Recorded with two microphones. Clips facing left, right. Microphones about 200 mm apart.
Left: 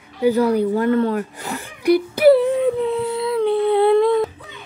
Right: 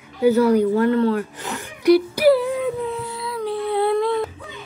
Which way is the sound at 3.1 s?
25° left (ahead or behind).